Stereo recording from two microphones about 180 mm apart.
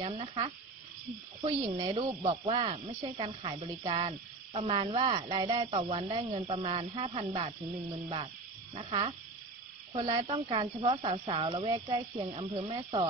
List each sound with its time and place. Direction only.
0.0 s speech: 30° right (ahead or behind)
1.6 s cricket: 20° right (ahead or behind)
2.0 s cricket: 30° right (ahead or behind)
5.7 s speech: 35° right (ahead or behind)
8.7 s speech: 30° right (ahead or behind)
9.9 s cricket: 25° right (ahead or behind)
12.0 s speech: 20° right (ahead or behind)
12.4 s speech: 30° right (ahead or behind)